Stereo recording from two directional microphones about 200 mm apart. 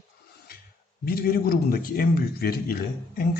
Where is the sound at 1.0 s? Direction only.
50° left (ahead or behind).